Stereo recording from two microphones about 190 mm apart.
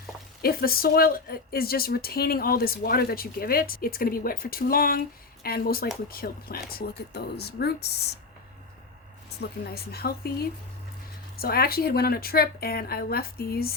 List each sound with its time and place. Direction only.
0.4 s a woman's voice: 50° left (ahead or behind)
9.4 s speech: 55° left (ahead or behind)
11.3 s a woman's voice: 55° left (ahead or behind)